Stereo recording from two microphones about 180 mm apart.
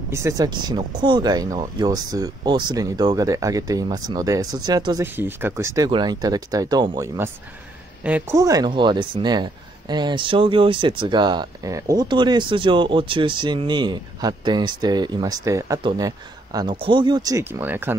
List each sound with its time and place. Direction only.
0.1 s speech: 15° right (ahead or behind)
8.0 s speech: 10° right (ahead or behind)